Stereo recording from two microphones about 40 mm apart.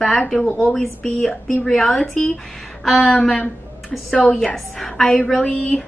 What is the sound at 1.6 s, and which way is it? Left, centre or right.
A woman's voice, centre.